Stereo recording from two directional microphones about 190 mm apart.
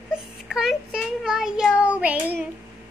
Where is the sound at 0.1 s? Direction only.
Centre (ahead or behind).